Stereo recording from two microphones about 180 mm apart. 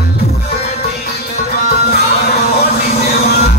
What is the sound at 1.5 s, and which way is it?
Music, 60° left (ahead or behind).